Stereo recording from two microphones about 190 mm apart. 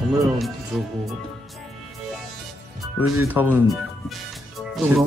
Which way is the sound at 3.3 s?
10° right (ahead or behind).